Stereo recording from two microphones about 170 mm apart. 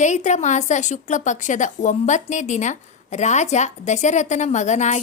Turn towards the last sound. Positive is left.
turn(degrees=45)  # may be behind; listen again after turning